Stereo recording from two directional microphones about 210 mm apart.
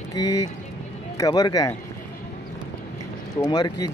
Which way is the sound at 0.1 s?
15° left (ahead or behind).